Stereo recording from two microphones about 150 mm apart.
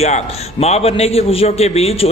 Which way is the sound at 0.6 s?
45° left (ahead or behind).